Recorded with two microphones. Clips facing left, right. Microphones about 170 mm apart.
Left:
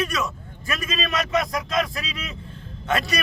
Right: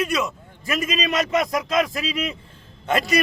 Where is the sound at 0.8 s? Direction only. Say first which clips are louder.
Right 2 dB; 20° right (ahead or behind).